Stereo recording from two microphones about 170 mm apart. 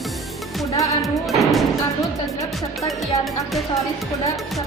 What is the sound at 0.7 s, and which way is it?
Music, 20° left (ahead or behind).